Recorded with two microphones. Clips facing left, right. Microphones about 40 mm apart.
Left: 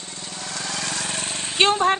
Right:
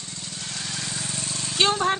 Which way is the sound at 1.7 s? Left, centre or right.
Centre.